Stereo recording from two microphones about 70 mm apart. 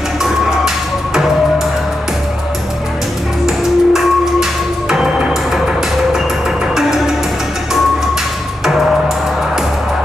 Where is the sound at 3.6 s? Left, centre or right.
Centre.